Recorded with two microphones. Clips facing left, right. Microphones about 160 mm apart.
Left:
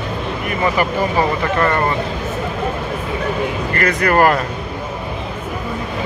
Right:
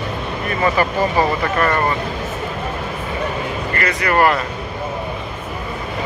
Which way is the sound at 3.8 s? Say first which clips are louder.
Left 2 dB; 50° left (ahead or behind).